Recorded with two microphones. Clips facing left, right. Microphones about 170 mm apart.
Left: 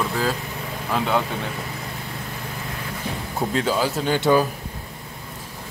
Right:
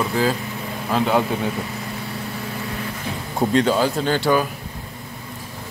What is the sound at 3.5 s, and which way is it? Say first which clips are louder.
Speech: right 4 dB; 5° left (ahead or behind).